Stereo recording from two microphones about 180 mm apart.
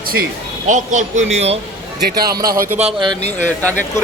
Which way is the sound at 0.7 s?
45° right (ahead or behind).